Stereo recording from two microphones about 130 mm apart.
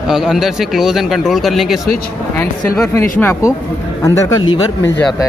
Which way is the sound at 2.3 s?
20° left (ahead or behind).